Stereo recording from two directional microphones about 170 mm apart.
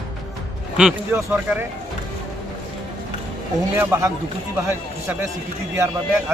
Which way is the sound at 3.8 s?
15° right (ahead or behind).